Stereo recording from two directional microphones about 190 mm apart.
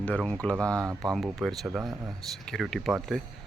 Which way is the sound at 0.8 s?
15° right (ahead or behind).